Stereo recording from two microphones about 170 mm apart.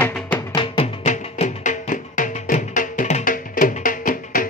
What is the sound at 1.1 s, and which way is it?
Music, 45° left (ahead or behind).